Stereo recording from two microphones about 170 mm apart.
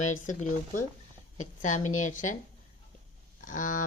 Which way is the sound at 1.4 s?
45° left (ahead or behind).